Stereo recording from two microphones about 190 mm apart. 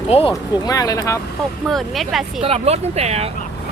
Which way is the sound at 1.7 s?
Centre (ahead or behind).